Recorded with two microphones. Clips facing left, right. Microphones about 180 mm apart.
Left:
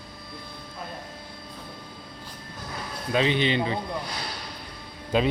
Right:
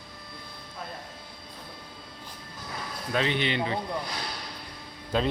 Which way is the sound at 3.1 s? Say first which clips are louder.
Left 4 dB; 20° left (ahead or behind).